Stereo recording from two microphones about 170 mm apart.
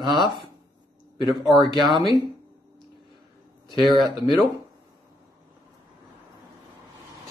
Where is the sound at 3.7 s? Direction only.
30° right (ahead or behind).